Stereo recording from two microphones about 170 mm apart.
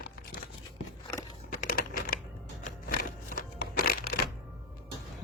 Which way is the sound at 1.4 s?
60° left (ahead or behind).